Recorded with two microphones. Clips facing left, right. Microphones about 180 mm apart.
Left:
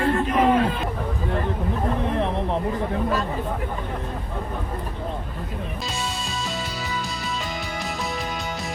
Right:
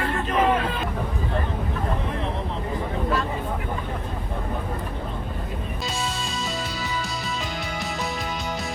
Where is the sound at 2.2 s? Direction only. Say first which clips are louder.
Left 5 dB; 60° left (ahead or behind).